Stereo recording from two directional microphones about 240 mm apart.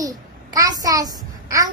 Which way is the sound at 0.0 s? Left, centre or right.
Centre.